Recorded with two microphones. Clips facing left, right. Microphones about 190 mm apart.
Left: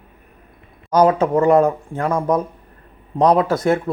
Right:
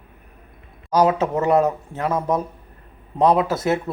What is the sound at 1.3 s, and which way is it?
Speech, 20° right (ahead or behind).